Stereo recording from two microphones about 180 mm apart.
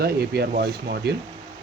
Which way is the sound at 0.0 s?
60° right (ahead or behind).